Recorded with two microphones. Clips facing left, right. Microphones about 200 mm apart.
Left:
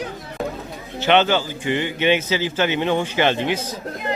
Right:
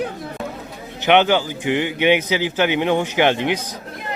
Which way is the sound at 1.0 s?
15° right (ahead or behind).